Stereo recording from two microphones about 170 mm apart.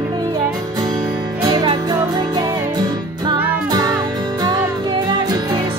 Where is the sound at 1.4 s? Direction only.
25° right (ahead or behind).